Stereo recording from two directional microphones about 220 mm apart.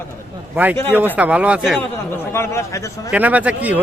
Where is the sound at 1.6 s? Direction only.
5° left (ahead or behind).